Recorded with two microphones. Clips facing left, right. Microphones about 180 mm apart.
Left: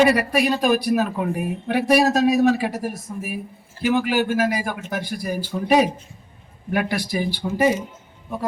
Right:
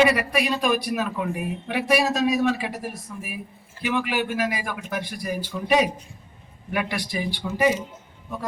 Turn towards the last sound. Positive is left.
turn(degrees=40)  # may be behind; listen again after turning